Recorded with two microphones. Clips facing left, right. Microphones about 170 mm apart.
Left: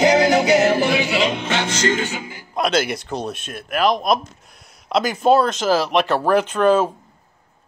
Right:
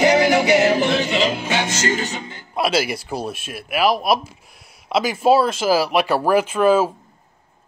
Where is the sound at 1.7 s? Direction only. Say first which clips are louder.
Left 2 dB; 40° right (ahead or behind).